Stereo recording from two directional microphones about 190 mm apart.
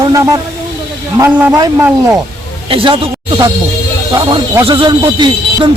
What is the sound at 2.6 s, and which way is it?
A man's voice, 25° right (ahead or behind).